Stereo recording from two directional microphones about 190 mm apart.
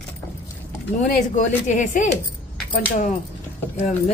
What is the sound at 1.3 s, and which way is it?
Speech, 40° left (ahead or behind).